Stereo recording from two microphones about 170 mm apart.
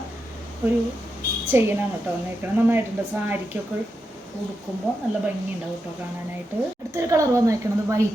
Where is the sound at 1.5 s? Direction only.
15° right (ahead or behind).